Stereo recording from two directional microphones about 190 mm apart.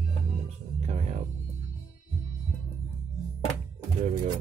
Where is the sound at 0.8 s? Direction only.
40° right (ahead or behind).